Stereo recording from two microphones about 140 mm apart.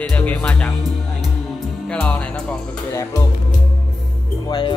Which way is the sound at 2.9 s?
20° left (ahead or behind).